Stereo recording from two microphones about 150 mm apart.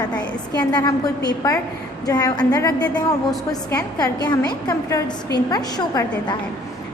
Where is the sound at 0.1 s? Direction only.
10° left (ahead or behind).